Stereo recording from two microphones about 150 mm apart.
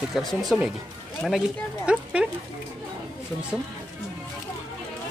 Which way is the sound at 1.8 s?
10° right (ahead or behind).